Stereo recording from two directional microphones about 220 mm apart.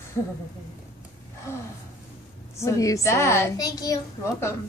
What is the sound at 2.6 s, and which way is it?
A woman's voice, 15° left (ahead or behind).